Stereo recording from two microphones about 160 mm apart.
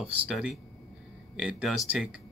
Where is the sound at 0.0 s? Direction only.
5° right (ahead or behind).